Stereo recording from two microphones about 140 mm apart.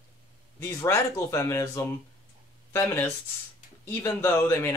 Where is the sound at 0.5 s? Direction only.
20° left (ahead or behind).